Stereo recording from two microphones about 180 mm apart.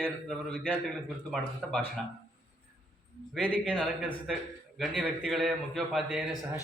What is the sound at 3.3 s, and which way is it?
A man's voice, 5° left (ahead or behind).